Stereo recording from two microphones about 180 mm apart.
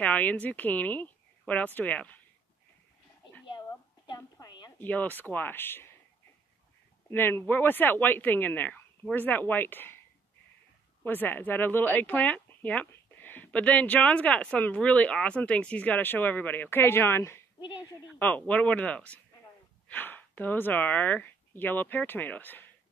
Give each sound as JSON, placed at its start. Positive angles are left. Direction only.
{"t": 0.0, "sound": "speech", "side_deg": 10}
{"t": 3.4, "sound": "a sound", "side_deg": 25}
{"t": 4.7, "sound": "speech", "side_deg": 10}
{"t": 7.1, "sound": "speech", "side_deg": 10}
{"t": 11.1, "sound": "speech", "side_deg": 10}